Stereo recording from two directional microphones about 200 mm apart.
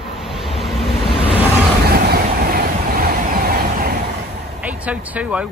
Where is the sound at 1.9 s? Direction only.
50° right (ahead or behind).